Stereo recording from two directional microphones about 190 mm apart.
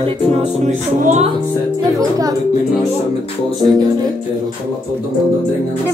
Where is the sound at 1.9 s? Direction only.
20° right (ahead or behind).